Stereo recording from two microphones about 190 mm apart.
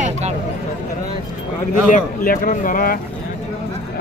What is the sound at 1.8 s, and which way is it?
Speech, 45° left (ahead or behind).